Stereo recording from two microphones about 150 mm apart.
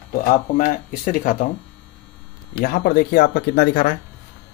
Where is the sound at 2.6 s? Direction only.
70° left (ahead or behind); by 4.0 s 90° left.